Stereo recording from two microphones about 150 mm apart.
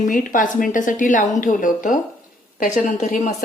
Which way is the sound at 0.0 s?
60° left (ahead or behind).